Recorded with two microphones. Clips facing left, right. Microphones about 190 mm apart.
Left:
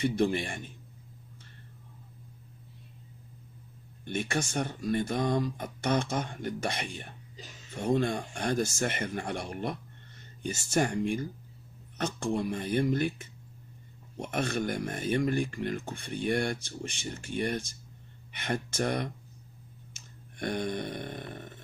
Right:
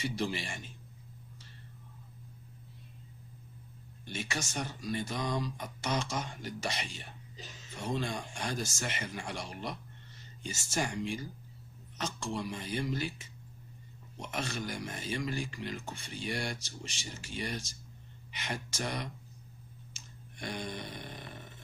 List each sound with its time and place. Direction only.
0.0 s speech: 55° left (ahead or behind)
4.0 s speech: 55° left (ahead or behind)
19.9 s a sound: 55° left (ahead or behind)